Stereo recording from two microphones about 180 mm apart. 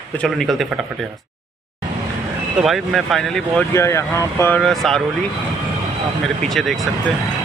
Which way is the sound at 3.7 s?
15° left (ahead or behind).